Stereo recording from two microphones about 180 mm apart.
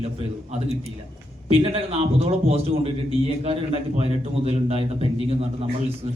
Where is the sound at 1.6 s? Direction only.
35° right (ahead or behind).